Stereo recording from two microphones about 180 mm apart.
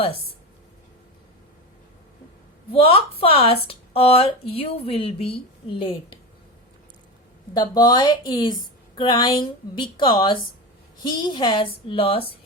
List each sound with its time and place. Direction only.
2.7 s a woman's voice: 30° left (ahead or behind)
7.5 s a woman's voice: 20° left (ahead or behind)